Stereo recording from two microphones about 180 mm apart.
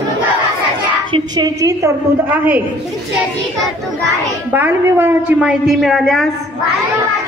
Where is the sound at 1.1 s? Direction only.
25° right (ahead or behind).